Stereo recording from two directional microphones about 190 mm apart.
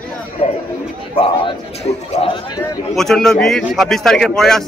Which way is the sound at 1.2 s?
30° left (ahead or behind).